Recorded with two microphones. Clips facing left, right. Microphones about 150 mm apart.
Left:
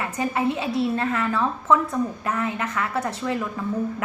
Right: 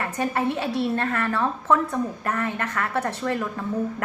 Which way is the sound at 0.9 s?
60° right (ahead or behind).